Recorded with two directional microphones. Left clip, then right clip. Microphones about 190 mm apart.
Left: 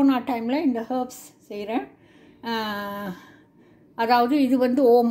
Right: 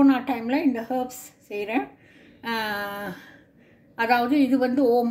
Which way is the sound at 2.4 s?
20° left (ahead or behind).